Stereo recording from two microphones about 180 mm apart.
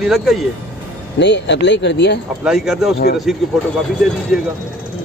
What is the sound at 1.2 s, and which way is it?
Speech, 75° left (ahead or behind).